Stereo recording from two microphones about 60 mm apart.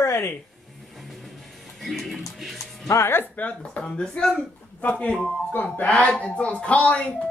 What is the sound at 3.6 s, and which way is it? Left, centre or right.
Speech, centre.